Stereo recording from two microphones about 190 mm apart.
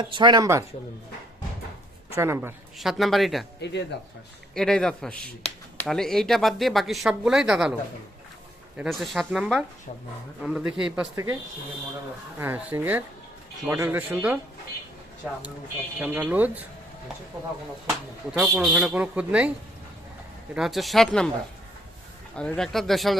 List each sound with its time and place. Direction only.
0.0 s speech: 25° right (ahead or behind)
2.1 s speech: 15° right (ahead or behind)
2.7 s speech: centre (ahead or behind)
3.6 s speech: 65° left (ahead or behind)
4.5 s speech: 5° left (ahead or behind)
8.8 s speech: centre (ahead or behind)
11.1 s speech: 15° right (ahead or behind)
12.4 s speech: 10° right (ahead or behind)
16.0 s speech: 10° right (ahead or behind)
18.3 s speech: 5° right (ahead or behind)
20.5 s speech: centre (ahead or behind)
22.4 s speech: 5° left (ahead or behind)